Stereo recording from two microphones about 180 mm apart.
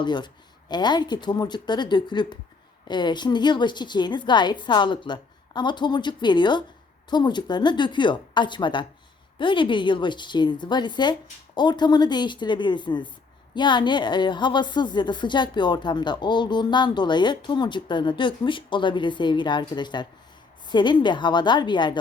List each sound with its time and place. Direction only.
0.0 s a woman's voice: 25° left (ahead or behind)